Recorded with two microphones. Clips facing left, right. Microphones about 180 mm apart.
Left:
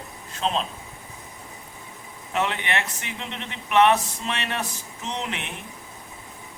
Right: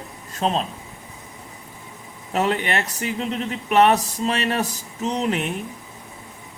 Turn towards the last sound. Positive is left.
turn(degrees=-40)  # may be behind; listen again after turning